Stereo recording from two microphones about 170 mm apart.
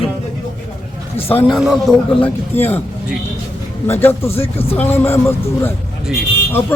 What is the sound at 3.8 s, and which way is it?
Speech, 15° left (ahead or behind).